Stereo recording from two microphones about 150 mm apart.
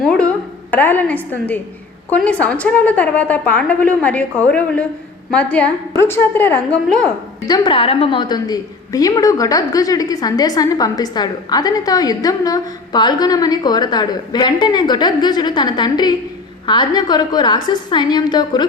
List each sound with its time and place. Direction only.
0.0 s a woman's voice: 10° left (ahead or behind)
7.4 s a woman's voice: 30° left (ahead or behind)